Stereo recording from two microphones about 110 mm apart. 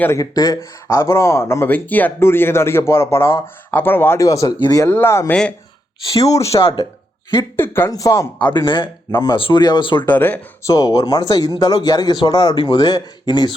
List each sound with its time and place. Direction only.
0.2 s speech: 35° left (ahead or behind)
0.9 s speech: 25° left (ahead or behind)
4.9 s speech: 20° left (ahead or behind)
5.3 s speech: 10° left (ahead or behind)
6.1 s speech: 30° left (ahead or behind)
6.4 s speech: 65° left (ahead or behind)
7.5 s speech: 20° left (ahead or behind)
7.9 s speech: 30° left (ahead or behind)
8.5 s speech: 45° left (ahead or behind)
10.1 s speech: 15° left (ahead or behind)
10.7 s speech: 35° left (ahead or behind)